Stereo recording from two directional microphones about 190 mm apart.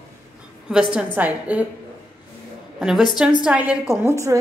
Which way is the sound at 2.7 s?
Centre (ahead or behind).